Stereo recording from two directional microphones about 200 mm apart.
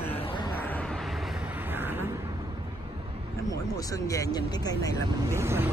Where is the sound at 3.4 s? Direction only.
15° left (ahead or behind).